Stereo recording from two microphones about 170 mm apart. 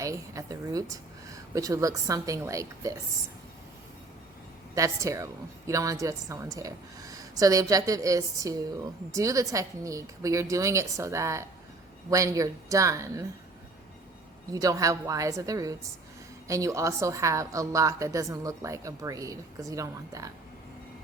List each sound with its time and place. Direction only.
0.0 s a woman's voice: 20° right (ahead or behind)
4.7 s a woman's voice: 20° right (ahead or behind)
14.5 s a woman's voice: 20° right (ahead or behind)